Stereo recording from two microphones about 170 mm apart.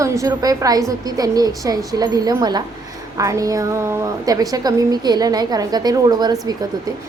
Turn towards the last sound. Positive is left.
turn(degrees=-20)  # may be behind; listen again after turning